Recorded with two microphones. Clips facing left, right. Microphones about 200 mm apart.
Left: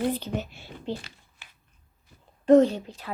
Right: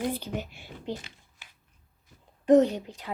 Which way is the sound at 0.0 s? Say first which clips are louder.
Left 3 dB; 10° right (ahead or behind).